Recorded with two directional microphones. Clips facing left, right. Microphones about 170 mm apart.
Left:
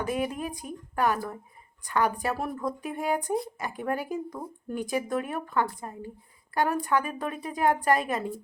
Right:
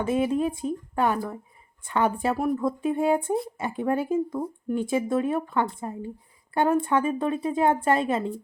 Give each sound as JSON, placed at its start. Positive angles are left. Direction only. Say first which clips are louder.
{"t": 0.0, "sound": "a woman's voice", "louder": "right 6 dB", "side_deg": -25}